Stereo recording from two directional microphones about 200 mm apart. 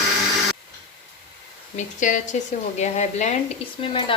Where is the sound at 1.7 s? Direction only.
40° left (ahead or behind).